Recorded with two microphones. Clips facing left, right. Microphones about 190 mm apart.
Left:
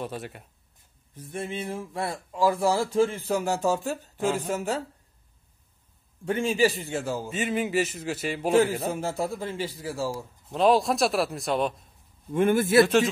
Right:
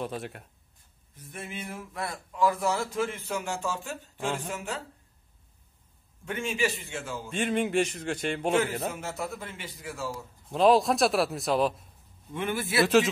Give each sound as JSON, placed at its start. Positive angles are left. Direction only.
{"t": 0.0, "sound": "a man's voice", "side_deg": 0}
{"t": 1.1, "sound": "speech", "side_deg": 30}
{"t": 6.2, "sound": "speech", "side_deg": 35}
{"t": 7.2, "sound": "a man's voice", "side_deg": 5}
{"t": 8.8, "sound": "speech", "side_deg": 30}
{"t": 10.5, "sound": "a man's voice", "side_deg": 0}
{"t": 12.3, "sound": "a man's voice", "side_deg": 45}
{"t": 12.8, "sound": "a man's voice", "side_deg": 0}